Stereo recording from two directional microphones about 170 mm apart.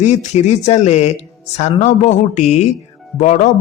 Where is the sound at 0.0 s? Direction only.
45° left (ahead or behind).